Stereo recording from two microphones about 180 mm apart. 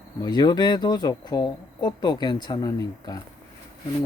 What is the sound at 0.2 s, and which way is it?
Speech, 25° left (ahead or behind).